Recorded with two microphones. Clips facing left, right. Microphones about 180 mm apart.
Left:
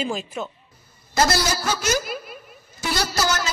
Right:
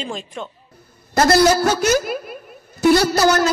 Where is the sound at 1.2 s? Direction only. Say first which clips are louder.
Right 8 dB; 60° right (ahead or behind).